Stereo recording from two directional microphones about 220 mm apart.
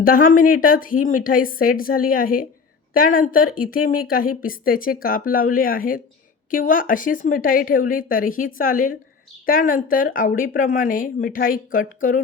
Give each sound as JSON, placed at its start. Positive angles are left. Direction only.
{"t": 0.0, "sound": "speech", "side_deg": 40}